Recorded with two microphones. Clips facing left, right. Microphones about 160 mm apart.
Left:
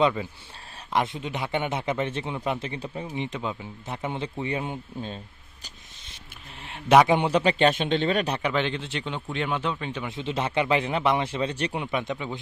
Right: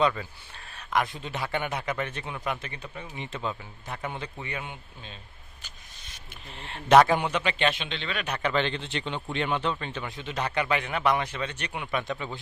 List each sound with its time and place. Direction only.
0.0 s a man's voice: 20° left (ahead or behind)
3.2 s a man's voice: 15° left (ahead or behind); by 5.2 s 40° left (ahead or behind)
6.6 s speech: 10° left (ahead or behind)
7.2 s speech: 35° left (ahead or behind)
8.4 s speech: 10° left (ahead or behind)
10.1 s a man's voice: 25° left (ahead or behind)
11.9 s a man's voice: 20° left (ahead or behind)